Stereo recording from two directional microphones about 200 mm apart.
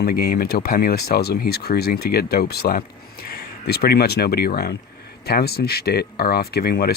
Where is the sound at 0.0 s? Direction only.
50° left (ahead or behind).